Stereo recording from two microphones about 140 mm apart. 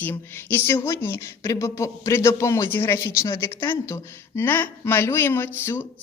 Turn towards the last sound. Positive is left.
turn(degrees=15)  # may be behind; listen again after turning